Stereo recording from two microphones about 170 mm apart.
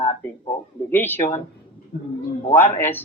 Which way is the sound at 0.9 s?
10° left (ahead or behind).